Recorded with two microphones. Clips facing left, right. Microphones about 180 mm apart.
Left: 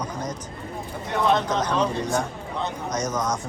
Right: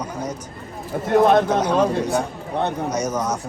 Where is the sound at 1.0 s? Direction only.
55° right (ahead or behind).